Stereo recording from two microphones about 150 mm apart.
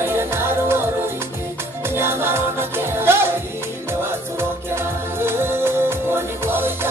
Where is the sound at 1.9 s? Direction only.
15° right (ahead or behind).